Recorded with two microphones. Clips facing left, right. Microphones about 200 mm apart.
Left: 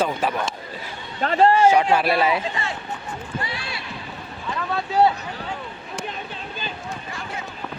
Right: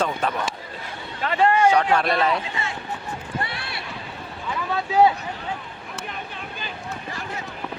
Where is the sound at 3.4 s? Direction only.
60° right (ahead or behind).